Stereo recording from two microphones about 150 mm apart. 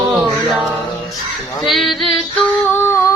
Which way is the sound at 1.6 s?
Centre (ahead or behind).